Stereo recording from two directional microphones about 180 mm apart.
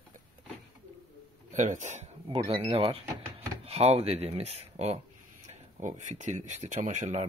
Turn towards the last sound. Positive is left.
turn(degrees=-40)  # may be behind; listen again after turning